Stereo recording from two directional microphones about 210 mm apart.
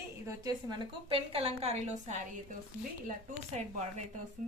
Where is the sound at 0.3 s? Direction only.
20° right (ahead or behind).